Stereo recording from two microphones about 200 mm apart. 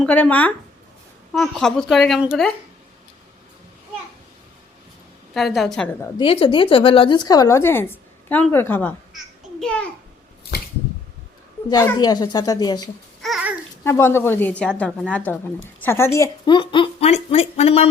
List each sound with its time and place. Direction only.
0.0 s a woman's voice: 5° left (ahead or behind)
5.3 s speech: centre (ahead or behind)
6.0 s speech: 25° left (ahead or behind); by 8.9 s 10° left (ahead or behind)
9.1 s a sound: 5° left (ahead or behind)
11.7 s speech: 15° left (ahead or behind)
13.2 s babbling: centre (ahead or behind)
13.8 s a woman's voice: 15° left (ahead or behind); by 17.8 s 30° left (ahead or behind)